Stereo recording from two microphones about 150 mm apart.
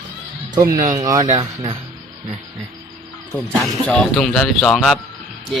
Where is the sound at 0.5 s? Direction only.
25° right (ahead or behind).